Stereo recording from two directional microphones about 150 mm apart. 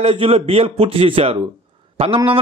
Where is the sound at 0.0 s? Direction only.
40° right (ahead or behind).